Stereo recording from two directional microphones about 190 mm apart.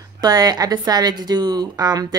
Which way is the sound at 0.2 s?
20° right (ahead or behind).